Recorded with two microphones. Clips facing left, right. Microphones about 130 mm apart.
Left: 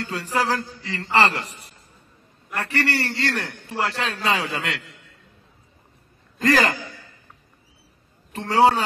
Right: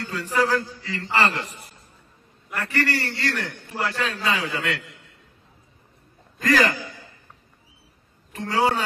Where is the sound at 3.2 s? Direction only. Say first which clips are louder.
Left 2 dB; 30° left (ahead or behind).